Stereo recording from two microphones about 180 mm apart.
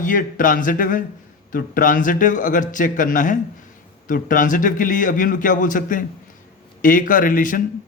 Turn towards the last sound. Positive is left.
turn(degrees=50)  # may be behind; listen again after turning